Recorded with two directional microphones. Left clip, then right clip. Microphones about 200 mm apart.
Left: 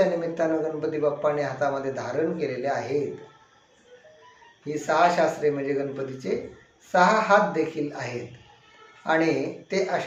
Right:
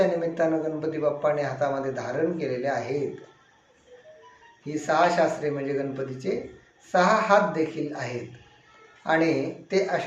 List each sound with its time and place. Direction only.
0.2 s a man's voice: 5° right (ahead or behind)
4.6 s a man's voice: 5° right (ahead or behind)